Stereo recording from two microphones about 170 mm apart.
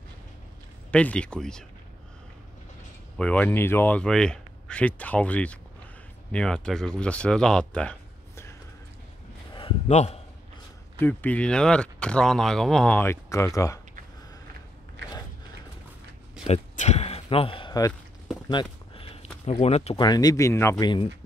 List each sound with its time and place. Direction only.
0.9 s speech: 5° left (ahead or behind)
3.2 s speech: 10° left (ahead or behind)
9.5 s a sound: 30° left (ahead or behind)
9.8 s a man's voice: 40° left (ahead or behind)
11.0 s speech: 10° left (ahead or behind)
16.4 s speech: 40° left (ahead or behind); by 17.9 s 25° left (ahead or behind)
18.5 s a sound: 30° left (ahead or behind)
19.4 s speech: 40° left (ahead or behind)
20.0 s speech: 25° left (ahead or behind)
20.8 s speech: 30° left (ahead or behind)